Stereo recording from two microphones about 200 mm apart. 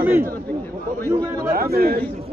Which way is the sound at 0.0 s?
10° right (ahead or behind).